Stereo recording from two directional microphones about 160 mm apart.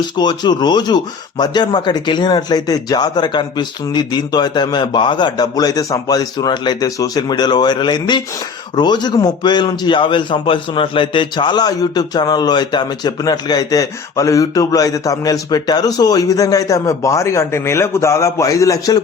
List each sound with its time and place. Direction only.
0.2 s a man's voice: 25° left (ahead or behind)